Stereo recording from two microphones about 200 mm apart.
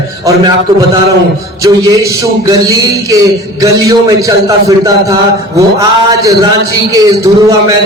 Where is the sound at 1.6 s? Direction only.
15° right (ahead or behind).